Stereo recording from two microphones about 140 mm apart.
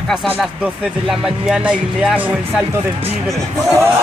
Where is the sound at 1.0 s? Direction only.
5° right (ahead or behind).